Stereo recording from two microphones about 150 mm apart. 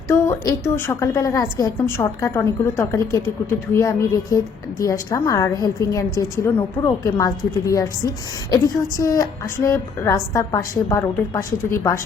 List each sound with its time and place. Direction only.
0.1 s a woman's voice: 20° left (ahead or behind)